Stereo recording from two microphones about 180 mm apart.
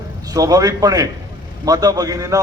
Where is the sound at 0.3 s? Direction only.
20° right (ahead or behind).